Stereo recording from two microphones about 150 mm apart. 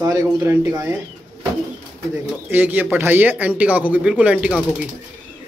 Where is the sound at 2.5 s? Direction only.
10° right (ahead or behind).